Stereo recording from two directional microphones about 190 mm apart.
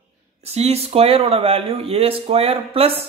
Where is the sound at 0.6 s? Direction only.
30° right (ahead or behind).